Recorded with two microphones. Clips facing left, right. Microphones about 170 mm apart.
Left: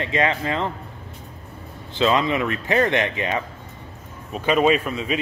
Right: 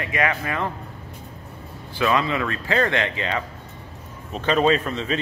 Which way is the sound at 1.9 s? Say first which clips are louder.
Left 2 dB; 20° left (ahead or behind).